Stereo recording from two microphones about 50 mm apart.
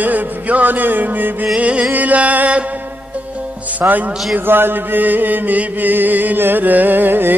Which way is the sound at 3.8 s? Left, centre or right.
Right.